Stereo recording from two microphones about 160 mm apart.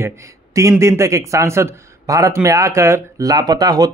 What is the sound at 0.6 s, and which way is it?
A man's voice, 20° right (ahead or behind).